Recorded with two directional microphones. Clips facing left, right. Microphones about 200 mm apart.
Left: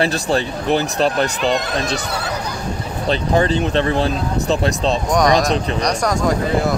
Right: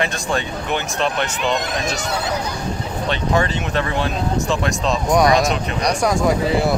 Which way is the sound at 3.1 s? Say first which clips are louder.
Left 4 dB; 30° left (ahead or behind).